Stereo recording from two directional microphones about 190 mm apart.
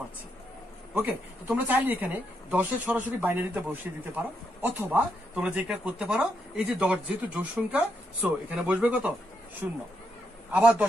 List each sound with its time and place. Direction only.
0.9 s speech: 10° right (ahead or behind)